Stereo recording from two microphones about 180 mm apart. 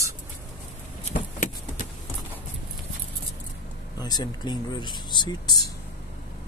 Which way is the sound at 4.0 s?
20° left (ahead or behind).